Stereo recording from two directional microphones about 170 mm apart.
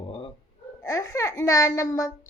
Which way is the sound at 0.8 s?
20° left (ahead or behind).